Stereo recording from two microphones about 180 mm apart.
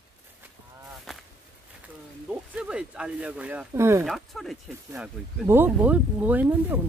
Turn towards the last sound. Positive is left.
turn(degrees=-10)  # may be behind; listen again after turning